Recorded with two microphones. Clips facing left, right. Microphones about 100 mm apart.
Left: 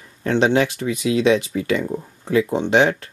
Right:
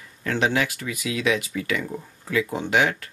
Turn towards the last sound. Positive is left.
turn(degrees=30)  # may be behind; listen again after turning